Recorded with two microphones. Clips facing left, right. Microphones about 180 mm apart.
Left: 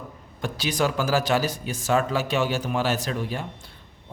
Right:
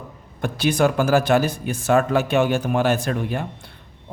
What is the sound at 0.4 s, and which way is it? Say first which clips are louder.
Speech: right 6 dB; 55° right (ahead or behind).